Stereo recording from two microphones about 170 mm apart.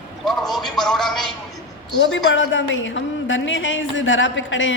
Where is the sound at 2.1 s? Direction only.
90° left.